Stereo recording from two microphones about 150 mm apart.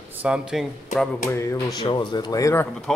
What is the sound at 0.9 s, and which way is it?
Speech, 55° left (ahead or behind).